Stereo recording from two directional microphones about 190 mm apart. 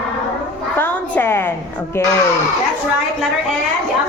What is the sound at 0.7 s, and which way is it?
Speech, 10° left (ahead or behind).